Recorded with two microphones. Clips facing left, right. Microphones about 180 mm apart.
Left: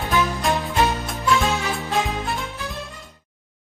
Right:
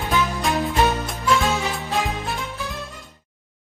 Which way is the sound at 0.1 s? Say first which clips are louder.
Left 1 dB; centre (ahead or behind).